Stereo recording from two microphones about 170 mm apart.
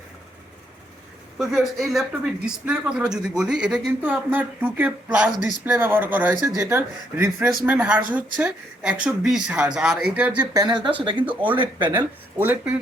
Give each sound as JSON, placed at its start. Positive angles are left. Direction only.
{"t": 1.4, "sound": "speech", "side_deg": 0}
{"t": 10.5, "sound": "speech", "side_deg": -25}
{"t": 11.9, "sound": "speech", "side_deg": -10}